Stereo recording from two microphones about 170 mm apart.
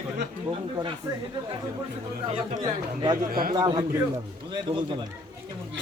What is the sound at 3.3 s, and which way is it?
Speech, 60° right (ahead or behind).